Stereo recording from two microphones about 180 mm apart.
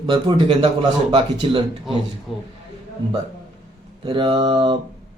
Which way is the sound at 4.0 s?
25° right (ahead or behind).